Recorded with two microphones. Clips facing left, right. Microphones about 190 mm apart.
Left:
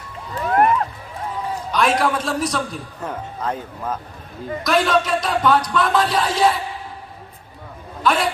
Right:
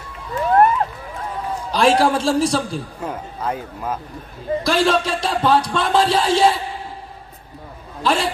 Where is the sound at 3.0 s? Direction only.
10° right (ahead or behind).